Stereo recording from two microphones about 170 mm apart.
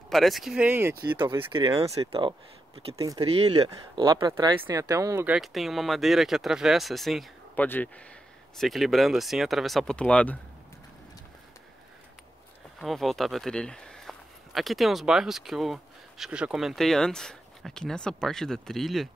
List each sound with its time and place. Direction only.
0.1 s speech: centre (ahead or behind)
1.1 s speech: 30° right (ahead or behind)
3.0 s speech: 20° right (ahead or behind)
3.3 s speech: 35° right (ahead or behind)
3.6 s speech: 20° right (ahead or behind); by 7.6 s centre (ahead or behind)
7.6 s speech: 10° left (ahead or behind)
8.5 s speech: centre (ahead or behind)
12.8 s speech: centre (ahead or behind)